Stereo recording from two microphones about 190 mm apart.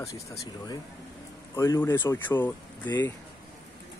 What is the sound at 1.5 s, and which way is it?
Speech, 15° left (ahead or behind).